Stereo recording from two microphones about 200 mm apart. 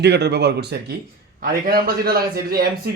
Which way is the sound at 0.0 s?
55° right (ahead or behind).